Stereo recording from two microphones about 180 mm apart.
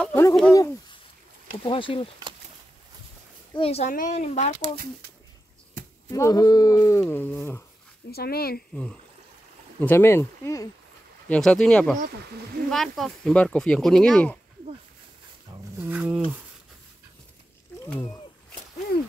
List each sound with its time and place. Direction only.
0.0 s speech: 15° left (ahead or behind)
1.6 s speech: 30° left (ahead or behind)
3.5 s speech: 35° left (ahead or behind)
3.9 s speech: 45° left (ahead or behind)
6.0 s speech: 15° left (ahead or behind)
8.1 s speech: 60° left (ahead or behind)
9.8 s speech: 10° left (ahead or behind)
11.2 s speech: 5° left (ahead or behind)
15.9 s speech: 10° right (ahead or behind)
17.8 s speech: 10° left (ahead or behind)